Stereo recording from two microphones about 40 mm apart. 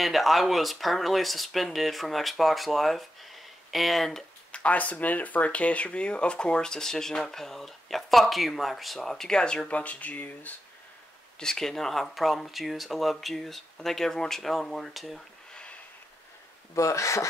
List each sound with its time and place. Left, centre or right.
0.0 s speech: centre
4.5 s speech: left; by 9.3 s centre
9.3 s speech: left
9.7 s speech: left
11.3 s speech: centre